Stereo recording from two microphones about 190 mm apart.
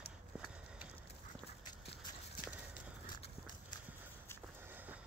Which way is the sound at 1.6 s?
20° left (ahead or behind).